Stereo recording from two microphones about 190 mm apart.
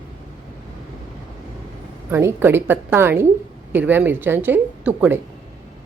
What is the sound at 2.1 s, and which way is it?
A woman's voice, 15° right (ahead or behind).